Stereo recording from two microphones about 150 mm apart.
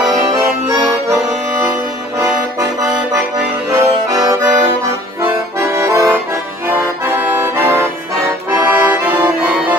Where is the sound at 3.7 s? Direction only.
20° right (ahead or behind).